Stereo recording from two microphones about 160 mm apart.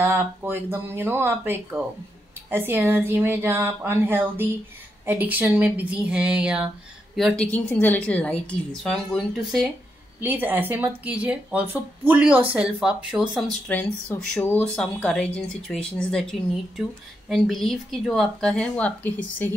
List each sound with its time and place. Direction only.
0.0 s a woman's voice: 10° right (ahead or behind)
10.2 s speech: 10° right (ahead or behind)
13.7 s speech: 10° left (ahead or behind)